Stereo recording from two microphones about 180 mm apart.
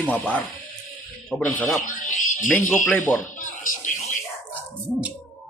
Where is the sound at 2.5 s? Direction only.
10° left (ahead or behind).